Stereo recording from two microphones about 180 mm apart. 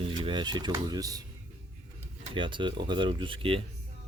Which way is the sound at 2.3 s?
25° right (ahead or behind).